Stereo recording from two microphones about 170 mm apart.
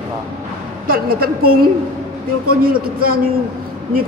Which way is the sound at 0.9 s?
60° right (ahead or behind).